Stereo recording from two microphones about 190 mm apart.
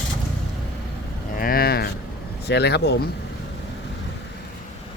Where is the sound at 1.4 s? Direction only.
50° left (ahead or behind).